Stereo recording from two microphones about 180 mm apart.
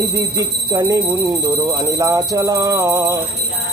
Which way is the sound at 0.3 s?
20° right (ahead or behind).